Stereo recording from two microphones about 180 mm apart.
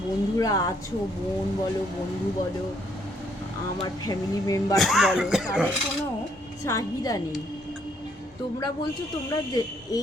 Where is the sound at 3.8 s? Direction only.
20° left (ahead or behind).